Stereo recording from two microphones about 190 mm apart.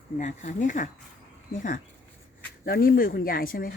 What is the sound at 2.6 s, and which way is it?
Speech, 50° left (ahead or behind).